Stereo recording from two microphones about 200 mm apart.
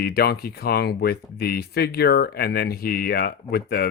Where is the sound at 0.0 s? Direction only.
50° left (ahead or behind).